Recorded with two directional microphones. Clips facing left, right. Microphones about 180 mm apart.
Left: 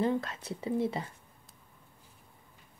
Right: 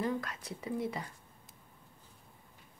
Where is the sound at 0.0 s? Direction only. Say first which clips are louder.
Left 5 dB; 25° left (ahead or behind).